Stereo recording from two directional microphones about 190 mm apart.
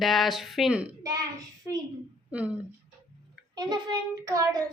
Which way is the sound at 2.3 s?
5° right (ahead or behind).